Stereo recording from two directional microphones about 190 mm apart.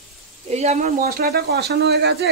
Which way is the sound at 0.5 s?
35° right (ahead or behind).